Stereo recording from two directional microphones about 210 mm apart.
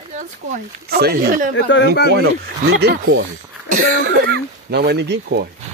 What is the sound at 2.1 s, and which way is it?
Speech, 50° right (ahead or behind).